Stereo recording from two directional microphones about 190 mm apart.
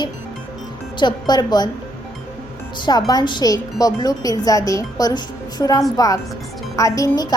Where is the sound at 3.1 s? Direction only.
20° left (ahead or behind).